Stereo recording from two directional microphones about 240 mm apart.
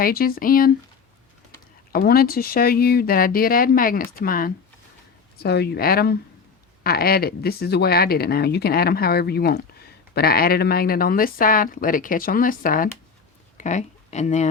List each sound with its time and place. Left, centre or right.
0.0 s speech: left
1.9 s speech: left